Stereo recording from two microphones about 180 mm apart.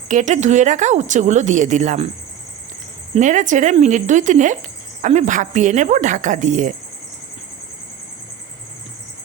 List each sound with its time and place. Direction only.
0.1 s speech: 40° right (ahead or behind)
3.2 s speech: 45° right (ahead or behind)